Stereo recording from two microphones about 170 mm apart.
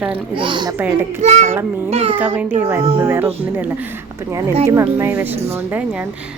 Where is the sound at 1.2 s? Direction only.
40° right (ahead or behind).